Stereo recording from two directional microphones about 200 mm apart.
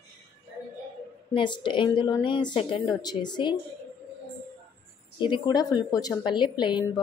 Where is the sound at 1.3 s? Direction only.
25° left (ahead or behind).